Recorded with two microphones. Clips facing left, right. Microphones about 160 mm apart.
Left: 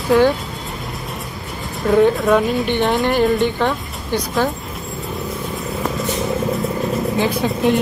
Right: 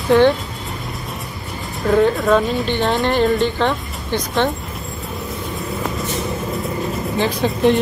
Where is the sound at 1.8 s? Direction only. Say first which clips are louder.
Left 1 dB; centre (ahead or behind).